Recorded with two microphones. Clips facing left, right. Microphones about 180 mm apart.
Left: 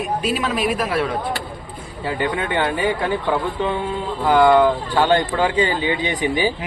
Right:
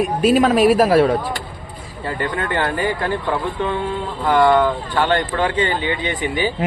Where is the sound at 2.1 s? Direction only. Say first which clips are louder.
Left 1 dB; 5° left (ahead or behind).